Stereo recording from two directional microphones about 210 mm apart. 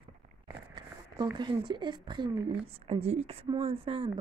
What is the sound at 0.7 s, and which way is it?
Speech, 20° right (ahead or behind).